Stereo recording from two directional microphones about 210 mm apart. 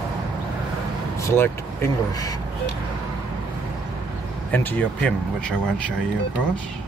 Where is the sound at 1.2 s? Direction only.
10° left (ahead or behind).